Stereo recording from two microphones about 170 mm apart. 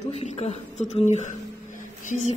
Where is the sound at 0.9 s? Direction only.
40° left (ahead or behind).